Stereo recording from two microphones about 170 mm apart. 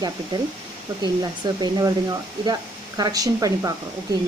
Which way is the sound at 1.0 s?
20° right (ahead or behind).